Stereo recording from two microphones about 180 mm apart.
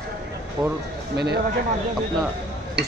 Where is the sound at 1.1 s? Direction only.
65° right (ahead or behind).